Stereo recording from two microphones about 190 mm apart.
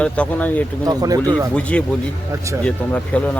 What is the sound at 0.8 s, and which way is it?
Speech, 20° right (ahead or behind).